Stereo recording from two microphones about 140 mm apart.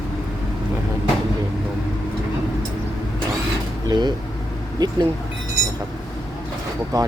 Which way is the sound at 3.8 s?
30° right (ahead or behind).